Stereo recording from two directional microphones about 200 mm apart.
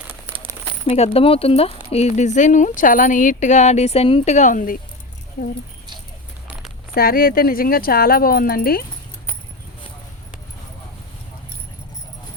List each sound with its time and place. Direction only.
0.9 s speech: 30° left (ahead or behind)
6.9 s speech: 45° left (ahead or behind)